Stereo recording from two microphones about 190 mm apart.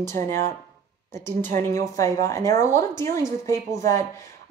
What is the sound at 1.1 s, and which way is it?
Speech, 10° left (ahead or behind).